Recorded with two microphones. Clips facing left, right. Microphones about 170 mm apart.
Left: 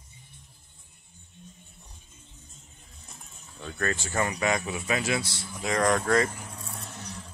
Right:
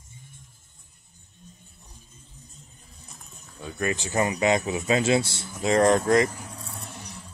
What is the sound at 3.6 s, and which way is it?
A man's voice, 15° right (ahead or behind).